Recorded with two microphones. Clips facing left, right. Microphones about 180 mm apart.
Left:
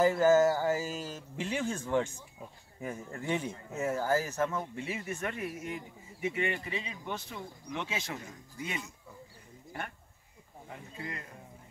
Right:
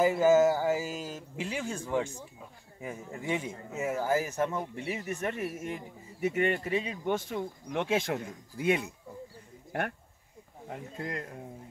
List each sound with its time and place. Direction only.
0.0 s speech: 10° right (ahead or behind)
6.2 s speech: 45° right (ahead or behind); by 9.9 s 70° right (ahead or behind)
10.7 s speech: 50° right (ahead or behind)